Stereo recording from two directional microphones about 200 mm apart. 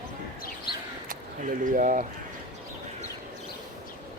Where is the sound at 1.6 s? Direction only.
40° right (ahead or behind).